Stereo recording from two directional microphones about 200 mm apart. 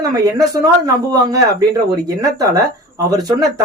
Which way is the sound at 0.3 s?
15° right (ahead or behind).